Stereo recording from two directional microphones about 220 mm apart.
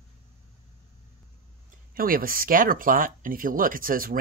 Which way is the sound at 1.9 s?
40° right (ahead or behind).